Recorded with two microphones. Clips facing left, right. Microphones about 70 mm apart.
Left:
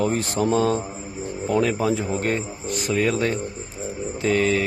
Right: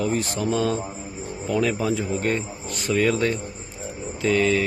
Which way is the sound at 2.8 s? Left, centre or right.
Left.